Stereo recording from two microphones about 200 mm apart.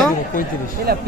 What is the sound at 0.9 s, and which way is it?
Speech, 50° right (ahead or behind).